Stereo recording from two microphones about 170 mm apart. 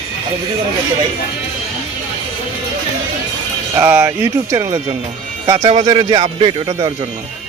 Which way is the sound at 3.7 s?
10° right (ahead or behind).